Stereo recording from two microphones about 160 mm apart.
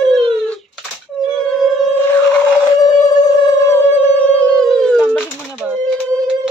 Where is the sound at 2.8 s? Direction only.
20° left (ahead or behind).